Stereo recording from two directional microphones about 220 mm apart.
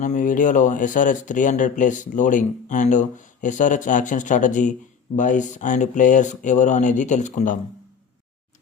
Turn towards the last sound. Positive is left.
turn(degrees=35)  # may be behind; listen again after turning